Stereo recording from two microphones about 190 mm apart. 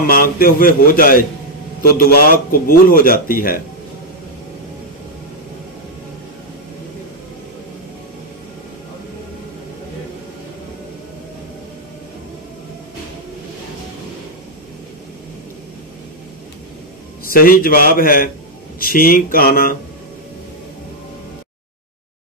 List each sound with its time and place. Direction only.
0.0 s a man's voice: 50° left (ahead or behind)
17.2 s a man's voice: 50° left (ahead or behind)